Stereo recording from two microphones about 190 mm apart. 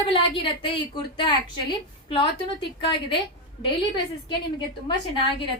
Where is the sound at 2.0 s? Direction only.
25° left (ahead or behind).